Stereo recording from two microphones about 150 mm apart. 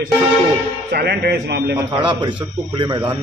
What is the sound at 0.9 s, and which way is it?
Speech, 90° right.